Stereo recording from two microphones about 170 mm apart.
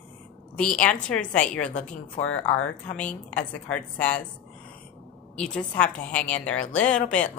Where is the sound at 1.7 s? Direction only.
45° left (ahead or behind).